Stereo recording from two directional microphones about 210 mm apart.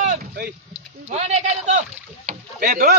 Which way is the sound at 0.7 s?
30° right (ahead or behind).